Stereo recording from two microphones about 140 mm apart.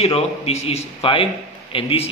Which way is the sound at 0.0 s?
50° left (ahead or behind).